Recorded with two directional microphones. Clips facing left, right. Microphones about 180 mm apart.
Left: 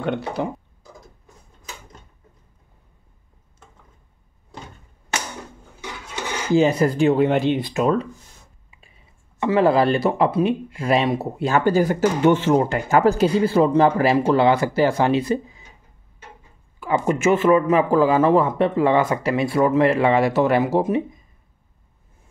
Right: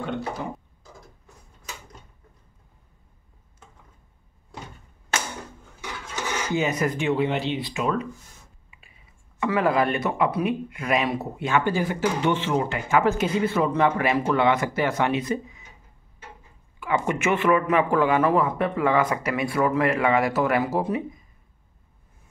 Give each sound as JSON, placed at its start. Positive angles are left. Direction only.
{"t": 0.4, "sound": "speech", "side_deg": 65}
{"t": 6.5, "sound": "speech", "side_deg": 35}
{"t": 9.4, "sound": "speech", "side_deg": 30}
{"t": 16.8, "sound": "a man's voice", "side_deg": 35}